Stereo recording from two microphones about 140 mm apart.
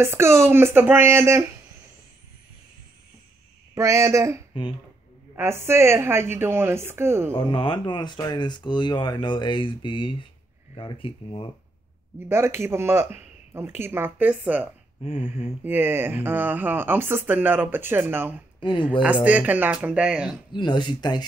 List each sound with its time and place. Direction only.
0.0 s speech: 20° right (ahead or behind)
3.7 s a woman's voice: 20° right (ahead or behind)
7.3 s speech: 35° left (ahead or behind)
12.2 s speech: 15° right (ahead or behind)
15.0 s speech: 45° left (ahead or behind)
15.6 s speech: 15° right (ahead or behind)
18.6 s speech: 35° left (ahead or behind)
19.2 s speech: 10° right (ahead or behind)
20.5 s speech: 35° left (ahead or behind)